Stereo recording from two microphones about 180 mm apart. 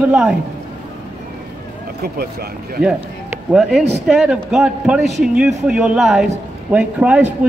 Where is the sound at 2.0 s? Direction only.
60° right (ahead or behind).